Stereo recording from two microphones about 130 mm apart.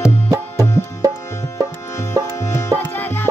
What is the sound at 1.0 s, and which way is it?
Tabla, 30° right (ahead or behind).